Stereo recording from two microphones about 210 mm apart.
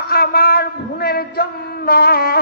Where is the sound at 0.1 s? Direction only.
45° left (ahead or behind).